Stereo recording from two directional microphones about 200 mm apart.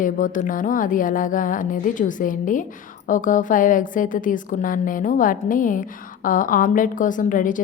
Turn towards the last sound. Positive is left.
turn(degrees=40)  # may be behind; listen again after turning